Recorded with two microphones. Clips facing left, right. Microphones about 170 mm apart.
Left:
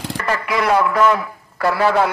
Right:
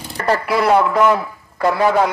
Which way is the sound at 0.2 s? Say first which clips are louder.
Right 4 dB; 35° right (ahead or behind).